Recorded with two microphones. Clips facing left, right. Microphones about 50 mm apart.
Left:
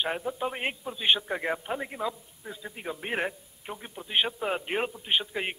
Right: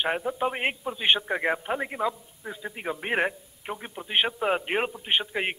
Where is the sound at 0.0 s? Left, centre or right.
Right.